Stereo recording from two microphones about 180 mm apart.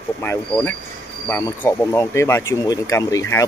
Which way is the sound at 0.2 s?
15° left (ahead or behind).